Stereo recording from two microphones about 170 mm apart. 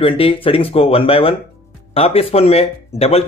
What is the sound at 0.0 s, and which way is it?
Speech, 35° left (ahead or behind).